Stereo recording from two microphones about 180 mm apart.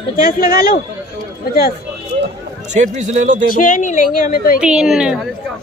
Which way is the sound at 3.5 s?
45° left (ahead or behind).